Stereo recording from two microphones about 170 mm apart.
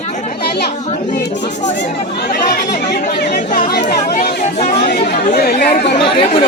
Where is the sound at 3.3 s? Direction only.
50° left (ahead or behind).